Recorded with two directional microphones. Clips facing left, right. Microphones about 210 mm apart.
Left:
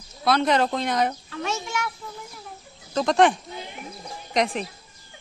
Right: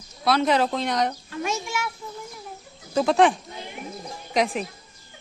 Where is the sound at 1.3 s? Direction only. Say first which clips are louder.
Right 1 dB; 10° right (ahead or behind).